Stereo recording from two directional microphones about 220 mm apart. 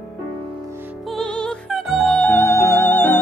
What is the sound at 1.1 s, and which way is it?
Music, 5° left (ahead or behind).